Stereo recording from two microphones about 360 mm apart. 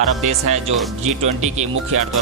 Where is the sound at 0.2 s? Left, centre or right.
Centre.